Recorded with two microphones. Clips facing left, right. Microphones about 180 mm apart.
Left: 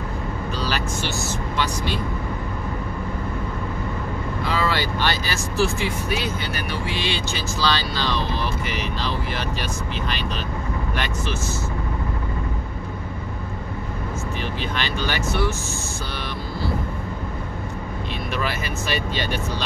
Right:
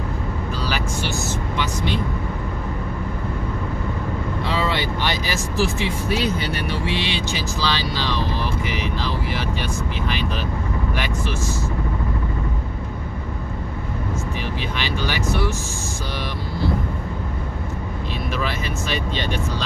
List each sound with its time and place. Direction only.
4.5 s speech: 25° right (ahead or behind)
9.3 s speech: 10° right (ahead or behind)
14.8 s speech: 15° right (ahead or behind)
18.4 s speech: 5° left (ahead or behind)